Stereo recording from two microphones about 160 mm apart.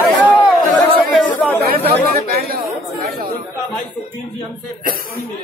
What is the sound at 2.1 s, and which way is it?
Chatter, 75° right (ahead or behind).